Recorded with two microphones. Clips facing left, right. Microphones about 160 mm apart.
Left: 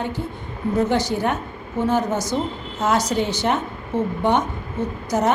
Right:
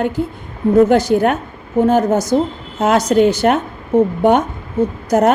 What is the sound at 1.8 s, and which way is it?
A woman's voice, 45° right (ahead or behind).